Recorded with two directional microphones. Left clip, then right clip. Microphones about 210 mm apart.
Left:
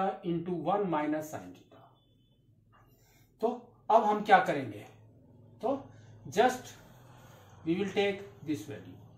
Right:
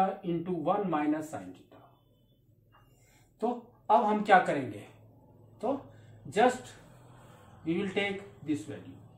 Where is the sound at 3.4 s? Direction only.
20° right (ahead or behind).